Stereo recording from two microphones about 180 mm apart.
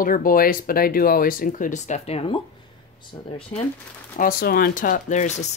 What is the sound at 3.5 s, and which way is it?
Speech, 45° left (ahead or behind).